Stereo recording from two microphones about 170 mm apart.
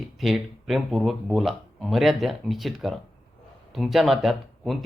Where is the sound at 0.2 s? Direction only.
Centre (ahead or behind).